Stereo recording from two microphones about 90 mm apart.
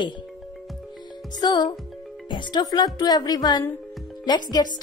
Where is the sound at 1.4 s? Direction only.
55° left (ahead or behind).